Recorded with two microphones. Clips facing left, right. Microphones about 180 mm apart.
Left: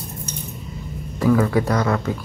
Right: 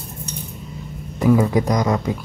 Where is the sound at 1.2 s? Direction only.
15° right (ahead or behind).